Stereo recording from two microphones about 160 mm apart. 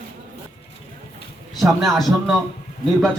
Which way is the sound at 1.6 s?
Centre (ahead or behind).